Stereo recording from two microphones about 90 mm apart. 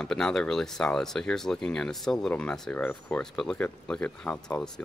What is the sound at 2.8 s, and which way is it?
Speech, 20° left (ahead or behind).